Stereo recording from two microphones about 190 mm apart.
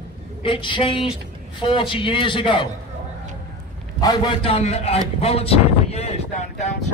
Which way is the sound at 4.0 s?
20° left (ahead or behind).